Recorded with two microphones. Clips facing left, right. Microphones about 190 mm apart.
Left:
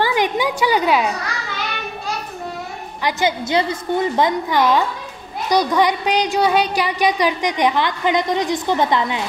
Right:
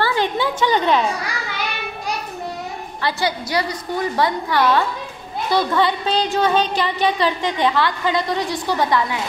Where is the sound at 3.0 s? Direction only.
15° left (ahead or behind).